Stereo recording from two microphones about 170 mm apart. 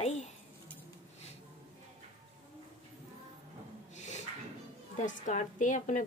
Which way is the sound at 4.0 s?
45° left (ahead or behind).